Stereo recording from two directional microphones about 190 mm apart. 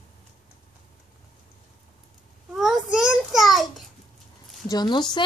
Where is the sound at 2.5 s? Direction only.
Centre (ahead or behind).